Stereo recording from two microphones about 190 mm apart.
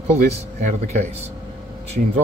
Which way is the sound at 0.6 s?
40° right (ahead or behind).